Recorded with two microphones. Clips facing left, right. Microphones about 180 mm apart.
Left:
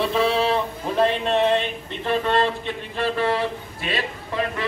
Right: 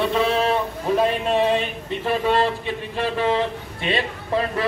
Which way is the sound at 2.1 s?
10° right (ahead or behind).